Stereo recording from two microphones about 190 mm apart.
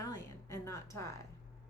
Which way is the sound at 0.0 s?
20° left (ahead or behind).